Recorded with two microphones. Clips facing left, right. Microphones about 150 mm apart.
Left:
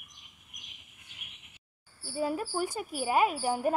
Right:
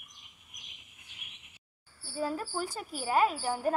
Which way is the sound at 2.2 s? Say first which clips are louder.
Left 3 dB; 15° left (ahead or behind).